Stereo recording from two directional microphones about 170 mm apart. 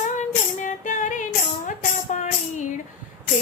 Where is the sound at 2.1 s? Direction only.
45° left (ahead or behind).